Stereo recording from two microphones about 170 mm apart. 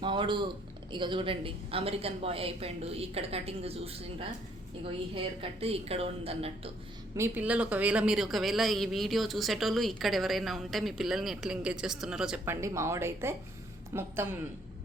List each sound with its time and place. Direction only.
0.0 s speech: 30° right (ahead or behind)
7.2 s a man's voice: 10° right (ahead or behind)
12.5 s a woman's voice: 15° right (ahead or behind)